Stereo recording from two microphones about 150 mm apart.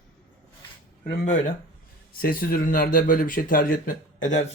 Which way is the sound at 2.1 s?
85° left.